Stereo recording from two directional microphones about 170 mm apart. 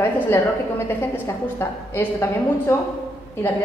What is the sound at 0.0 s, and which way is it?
A woman's voice, 15° left (ahead or behind).